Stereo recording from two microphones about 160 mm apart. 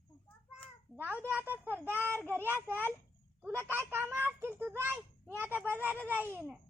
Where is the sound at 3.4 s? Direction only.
15° right (ahead or behind).